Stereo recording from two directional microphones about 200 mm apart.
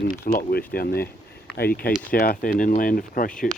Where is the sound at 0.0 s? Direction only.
45° left (ahead or behind).